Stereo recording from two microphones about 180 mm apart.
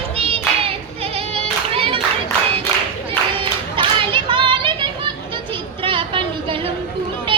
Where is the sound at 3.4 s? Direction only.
30° right (ahead or behind).